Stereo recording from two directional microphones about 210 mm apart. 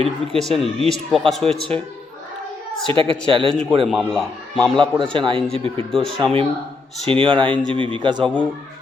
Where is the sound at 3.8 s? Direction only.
Centre (ahead or behind).